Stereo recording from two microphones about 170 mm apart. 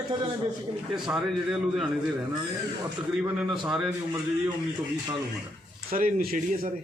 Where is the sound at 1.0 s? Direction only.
5° right (ahead or behind).